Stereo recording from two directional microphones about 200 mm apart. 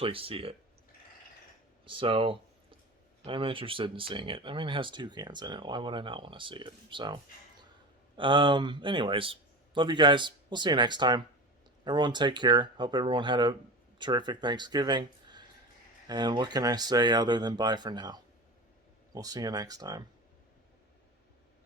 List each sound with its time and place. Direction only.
0.0 s speech: 25° right (ahead or behind)
1.8 s a sound: 25° right (ahead or behind)
3.2 s speech: 25° right (ahead or behind)